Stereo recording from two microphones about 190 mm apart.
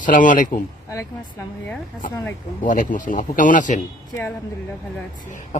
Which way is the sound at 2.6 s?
45° left (ahead or behind).